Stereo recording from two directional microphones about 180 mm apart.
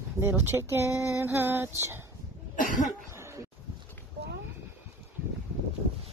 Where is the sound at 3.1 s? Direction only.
15° right (ahead or behind).